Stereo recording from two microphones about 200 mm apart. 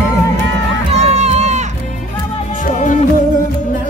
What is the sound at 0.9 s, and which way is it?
Music, 35° right (ahead or behind).